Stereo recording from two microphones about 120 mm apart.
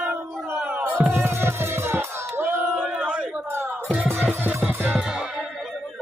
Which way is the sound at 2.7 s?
10° right (ahead or behind).